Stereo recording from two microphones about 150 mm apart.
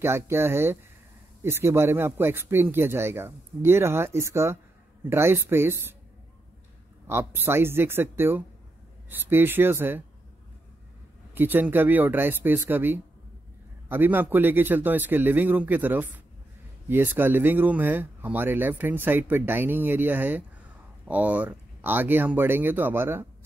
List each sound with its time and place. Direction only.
0.0 s speech: 15° right (ahead or behind)
7.1 s speech: 15° right (ahead or behind)
11.3 s speech: 15° right (ahead or behind)